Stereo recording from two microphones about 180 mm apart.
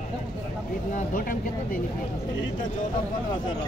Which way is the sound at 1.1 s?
55° left (ahead or behind).